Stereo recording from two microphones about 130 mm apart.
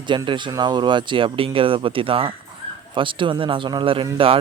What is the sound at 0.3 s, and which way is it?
Speech, 35° right (ahead or behind).